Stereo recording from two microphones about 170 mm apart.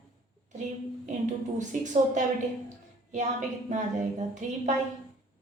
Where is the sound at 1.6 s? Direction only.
45° right (ahead or behind).